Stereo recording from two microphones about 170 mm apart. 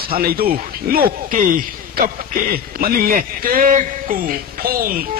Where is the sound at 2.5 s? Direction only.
60° right (ahead or behind).